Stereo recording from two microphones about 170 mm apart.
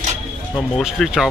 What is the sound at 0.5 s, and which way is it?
Speech, centre (ahead or behind).